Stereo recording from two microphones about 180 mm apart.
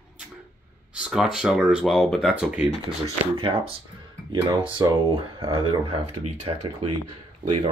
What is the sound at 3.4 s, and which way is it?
Speech, 30° right (ahead or behind).